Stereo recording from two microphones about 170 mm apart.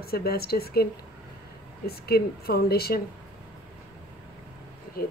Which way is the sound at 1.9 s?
65° left (ahead or behind).